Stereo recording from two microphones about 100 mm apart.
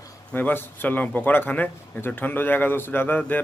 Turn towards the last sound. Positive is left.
turn(degrees=20)  # may be behind; listen again after turning